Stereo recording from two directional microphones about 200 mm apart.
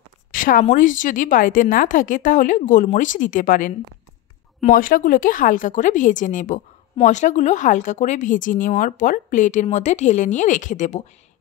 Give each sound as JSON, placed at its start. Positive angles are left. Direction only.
{"t": 0.3, "sound": "a woman's voice", "side_deg": 40}